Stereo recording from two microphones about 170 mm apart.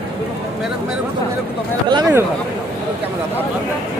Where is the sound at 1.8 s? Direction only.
25° right (ahead or behind).